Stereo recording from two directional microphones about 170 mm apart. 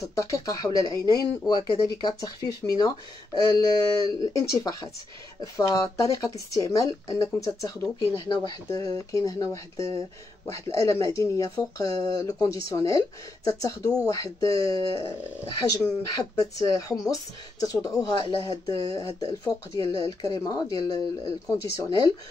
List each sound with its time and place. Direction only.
0.0 s speech: 20° left (ahead or behind)